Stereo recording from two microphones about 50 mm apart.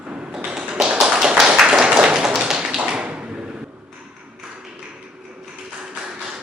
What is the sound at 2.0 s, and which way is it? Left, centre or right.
Tap, centre.